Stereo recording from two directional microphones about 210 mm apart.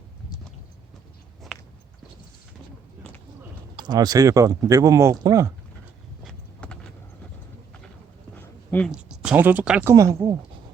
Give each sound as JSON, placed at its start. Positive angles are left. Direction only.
{"t": 3.8, "sound": "speech", "side_deg": -20}
{"t": 6.2, "sound": "clip-clop", "side_deg": 5}
{"t": 8.9, "sound": "speech", "side_deg": -5}